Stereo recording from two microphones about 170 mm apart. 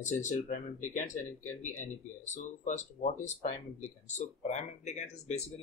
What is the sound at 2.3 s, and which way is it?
Speech, 45° left (ahead or behind).